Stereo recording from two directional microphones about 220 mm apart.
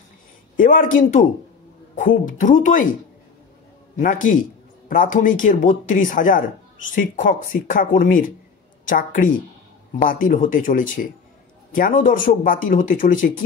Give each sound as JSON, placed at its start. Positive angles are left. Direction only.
{"t": 0.6, "sound": "speech", "side_deg": 40}
{"t": 4.0, "sound": "speech", "side_deg": 35}